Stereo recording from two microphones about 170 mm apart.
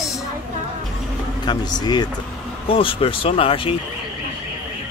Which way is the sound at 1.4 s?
25° left (ahead or behind).